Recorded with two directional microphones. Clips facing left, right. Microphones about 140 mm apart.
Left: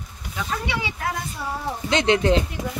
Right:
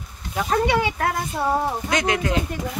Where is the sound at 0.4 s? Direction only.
45° right (ahead or behind).